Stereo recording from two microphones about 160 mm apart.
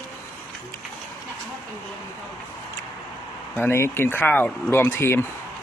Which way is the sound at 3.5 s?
15° left (ahead or behind).